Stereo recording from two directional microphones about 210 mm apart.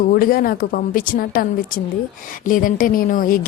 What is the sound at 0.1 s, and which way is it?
Speech, 45° left (ahead or behind).